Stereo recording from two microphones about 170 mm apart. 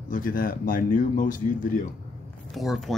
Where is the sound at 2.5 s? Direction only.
Centre (ahead or behind).